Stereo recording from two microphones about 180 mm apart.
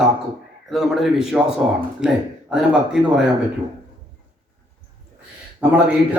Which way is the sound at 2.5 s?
5° right (ahead or behind).